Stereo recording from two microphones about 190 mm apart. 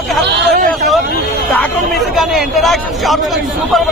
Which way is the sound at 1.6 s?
Centre (ahead or behind).